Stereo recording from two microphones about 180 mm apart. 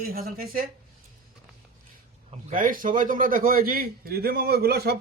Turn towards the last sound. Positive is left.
turn(degrees=-60)  # may be behind; listen again after turning